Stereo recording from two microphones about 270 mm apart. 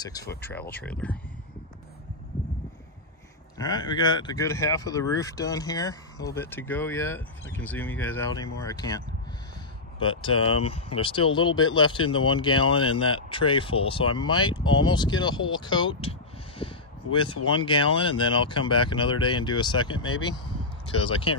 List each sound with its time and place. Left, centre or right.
0.0 s speech: centre
3.5 s speech: centre
10.0 s speech: centre